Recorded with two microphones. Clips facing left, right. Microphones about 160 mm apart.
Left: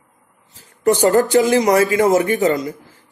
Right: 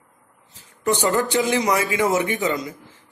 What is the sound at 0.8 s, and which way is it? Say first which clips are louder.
A man's voice: left 7 dB; 45° left (ahead or behind).